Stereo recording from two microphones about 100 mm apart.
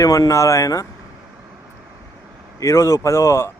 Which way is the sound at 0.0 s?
35° left (ahead or behind).